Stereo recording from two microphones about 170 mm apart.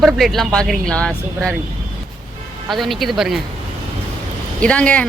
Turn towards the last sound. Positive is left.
turn(degrees=5)  # may be behind; listen again after turning